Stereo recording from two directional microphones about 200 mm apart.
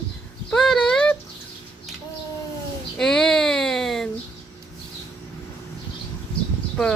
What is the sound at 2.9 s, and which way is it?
Child singing, 5° left (ahead or behind).